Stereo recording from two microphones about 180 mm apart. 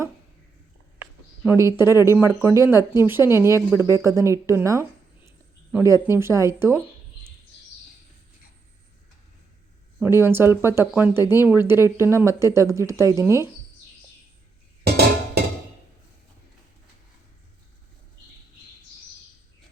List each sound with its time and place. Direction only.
1.5 s speech: 15° right (ahead or behind)
10.0 s speech: 15° right (ahead or behind)